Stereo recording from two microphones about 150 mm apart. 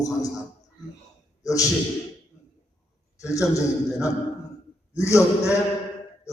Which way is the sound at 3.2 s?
20° left (ahead or behind).